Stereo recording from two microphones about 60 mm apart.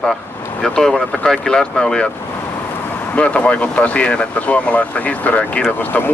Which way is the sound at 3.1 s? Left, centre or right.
Left.